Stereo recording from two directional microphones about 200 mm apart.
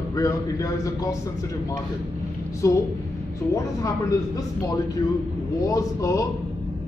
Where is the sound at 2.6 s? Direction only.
15° left (ahead or behind).